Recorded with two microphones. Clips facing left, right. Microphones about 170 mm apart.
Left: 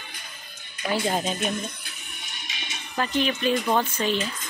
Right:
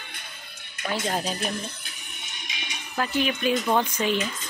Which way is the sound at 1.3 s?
35° right (ahead or behind).